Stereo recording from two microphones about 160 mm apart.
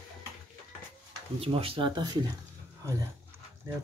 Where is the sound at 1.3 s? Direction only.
35° right (ahead or behind).